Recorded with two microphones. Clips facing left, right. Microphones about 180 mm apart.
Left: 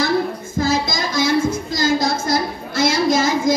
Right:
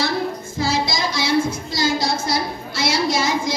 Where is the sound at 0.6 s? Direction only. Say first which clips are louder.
Left 2 dB; 50° left (ahead or behind).